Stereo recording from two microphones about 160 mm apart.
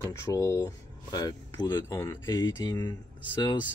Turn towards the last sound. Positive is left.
turn(degrees=30)  # may be behind; listen again after turning